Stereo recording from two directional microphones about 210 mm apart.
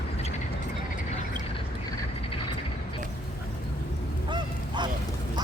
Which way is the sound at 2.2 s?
25° left (ahead or behind).